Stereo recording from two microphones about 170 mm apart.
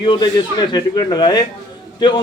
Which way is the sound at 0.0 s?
25° left (ahead or behind).